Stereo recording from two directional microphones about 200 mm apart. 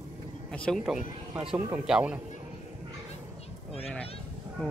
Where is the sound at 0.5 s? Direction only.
5° left (ahead or behind).